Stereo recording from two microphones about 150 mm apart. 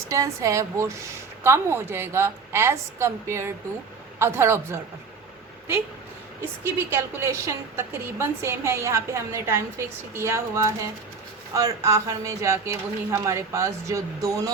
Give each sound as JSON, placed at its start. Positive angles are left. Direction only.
{"t": 0.1, "sound": "a woman's voice", "side_deg": -20}
{"t": 6.9, "sound": "a woman's voice", "side_deg": -15}